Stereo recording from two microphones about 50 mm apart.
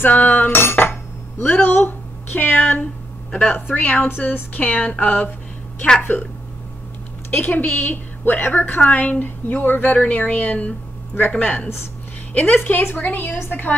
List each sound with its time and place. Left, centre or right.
0.0 s speech: left
0.6 s cutlery: left
1.4 s a woman's voice: left
7.2 s speech: left
8.8 s speech: left